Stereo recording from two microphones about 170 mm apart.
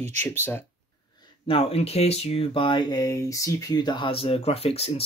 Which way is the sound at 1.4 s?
35° left (ahead or behind).